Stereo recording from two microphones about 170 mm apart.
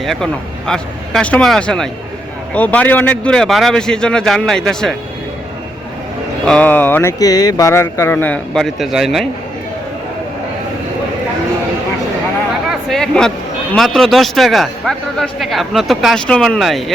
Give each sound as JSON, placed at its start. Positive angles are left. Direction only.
{"t": 0.0, "sound": "a man's voice", "side_deg": 0}
{"t": 6.4, "sound": "speech", "side_deg": 5}
{"t": 12.6, "sound": "a sound", "side_deg": 0}
{"t": 13.7, "sound": "a man's voice", "side_deg": 0}